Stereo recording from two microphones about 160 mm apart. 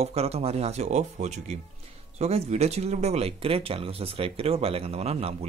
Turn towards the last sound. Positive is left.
turn(degrees=-40)  # may be behind; listen again after turning